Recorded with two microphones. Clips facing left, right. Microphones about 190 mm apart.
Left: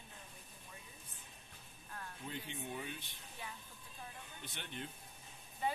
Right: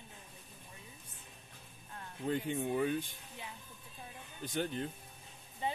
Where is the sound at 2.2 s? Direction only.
50° right (ahead or behind).